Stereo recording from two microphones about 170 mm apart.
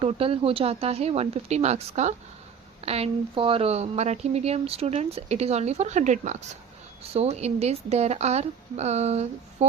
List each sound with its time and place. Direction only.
0.0 s speech: 35° right (ahead or behind)